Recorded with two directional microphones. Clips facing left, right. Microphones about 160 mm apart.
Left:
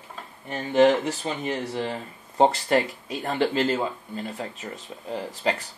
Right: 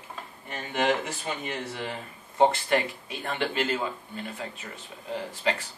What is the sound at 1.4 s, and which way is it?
Speech, 35° left (ahead or behind).